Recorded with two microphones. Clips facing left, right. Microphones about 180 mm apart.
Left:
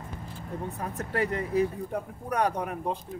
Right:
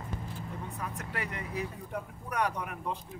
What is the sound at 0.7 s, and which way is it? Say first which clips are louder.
Speech: left 10 dB; 35° left (ahead or behind).